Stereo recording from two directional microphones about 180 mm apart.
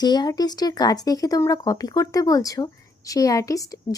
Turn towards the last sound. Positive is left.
turn(degrees=20)  # may be behind; listen again after turning